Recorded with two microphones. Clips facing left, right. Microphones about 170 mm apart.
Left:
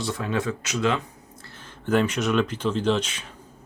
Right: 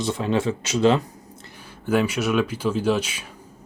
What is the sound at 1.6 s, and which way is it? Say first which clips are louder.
Speech: right 1 dB; 10° right (ahead or behind).